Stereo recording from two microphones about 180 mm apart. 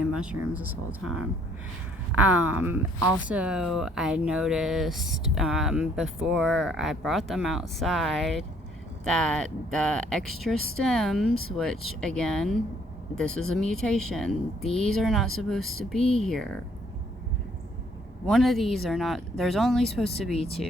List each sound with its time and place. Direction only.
0.0 s speech: 5° right (ahead or behind)
18.3 s speech: centre (ahead or behind)
20.3 s speech: 35° left (ahead or behind)